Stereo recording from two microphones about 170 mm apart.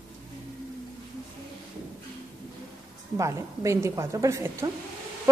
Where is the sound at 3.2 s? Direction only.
15° right (ahead or behind).